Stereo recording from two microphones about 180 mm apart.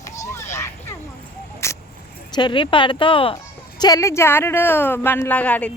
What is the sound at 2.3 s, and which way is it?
Speech, 25° left (ahead or behind).